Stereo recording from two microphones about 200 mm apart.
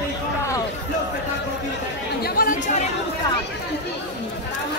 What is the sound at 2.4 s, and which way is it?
Chatter, 45° left (ahead or behind).